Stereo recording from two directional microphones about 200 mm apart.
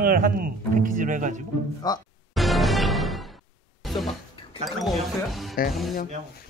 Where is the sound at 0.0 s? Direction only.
45° right (ahead or behind).